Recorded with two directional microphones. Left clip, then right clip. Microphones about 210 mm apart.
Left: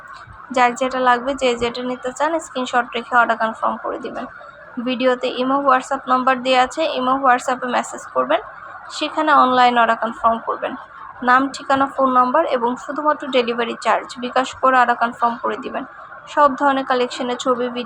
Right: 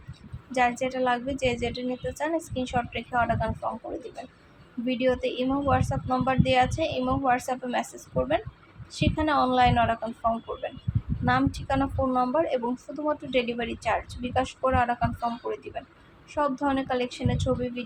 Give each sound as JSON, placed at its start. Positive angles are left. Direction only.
{"t": 0.5, "sound": "a woman's voice", "side_deg": 15}
{"t": 4.9, "sound": "a woman's voice", "side_deg": 15}